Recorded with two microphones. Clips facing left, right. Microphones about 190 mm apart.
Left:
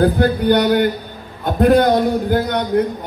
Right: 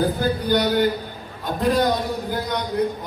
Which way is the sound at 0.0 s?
65° left (ahead or behind).